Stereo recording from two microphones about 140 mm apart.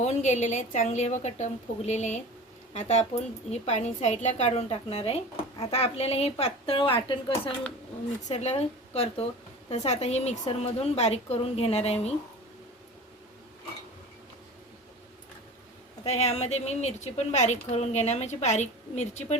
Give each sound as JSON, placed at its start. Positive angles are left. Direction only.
{"t": 0.0, "sound": "a woman's voice", "side_deg": 55}
{"t": 8.3, "sound": "a woman's voice", "side_deg": 50}
{"t": 16.0, "sound": "a woman's voice", "side_deg": 50}